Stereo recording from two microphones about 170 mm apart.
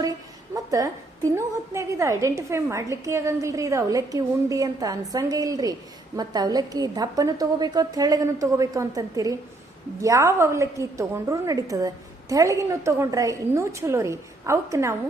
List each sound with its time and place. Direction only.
0.5 s a woman's voice: 20° right (ahead or behind)